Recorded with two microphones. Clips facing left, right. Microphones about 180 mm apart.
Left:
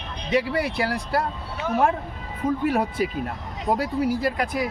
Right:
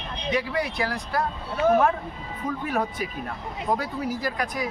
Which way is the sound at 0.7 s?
30° left (ahead or behind).